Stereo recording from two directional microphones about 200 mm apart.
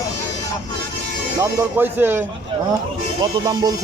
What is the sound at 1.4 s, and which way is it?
Speech, 10° right (ahead or behind).